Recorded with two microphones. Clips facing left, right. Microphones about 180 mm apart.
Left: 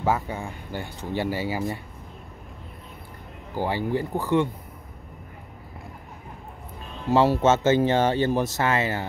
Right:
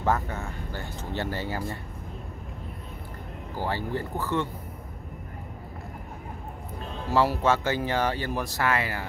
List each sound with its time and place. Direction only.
0.0 s speech: 10° left (ahead or behind)
3.5 s speech: 15° left (ahead or behind)
7.1 s speech: 20° left (ahead or behind)